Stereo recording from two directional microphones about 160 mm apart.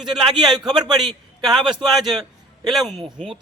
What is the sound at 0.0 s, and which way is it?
Speech, centre (ahead or behind).